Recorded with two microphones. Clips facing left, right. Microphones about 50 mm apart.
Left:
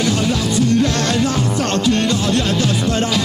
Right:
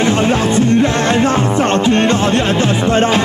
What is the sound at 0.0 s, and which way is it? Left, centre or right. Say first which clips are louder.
Music: right 5 dB; right.